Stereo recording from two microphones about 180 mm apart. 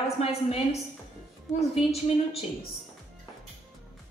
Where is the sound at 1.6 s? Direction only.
35° left (ahead or behind).